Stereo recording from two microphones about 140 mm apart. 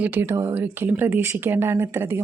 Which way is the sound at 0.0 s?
15° right (ahead or behind).